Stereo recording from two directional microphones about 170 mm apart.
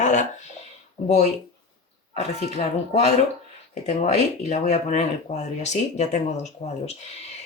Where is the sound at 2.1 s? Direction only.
40° left (ahead or behind).